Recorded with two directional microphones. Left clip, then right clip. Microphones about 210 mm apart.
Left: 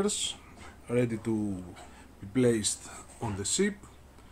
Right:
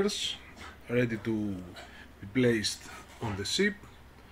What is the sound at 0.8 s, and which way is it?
Speech, 10° left (ahead or behind).